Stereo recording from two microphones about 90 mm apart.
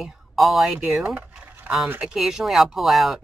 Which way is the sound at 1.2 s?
15° right (ahead or behind).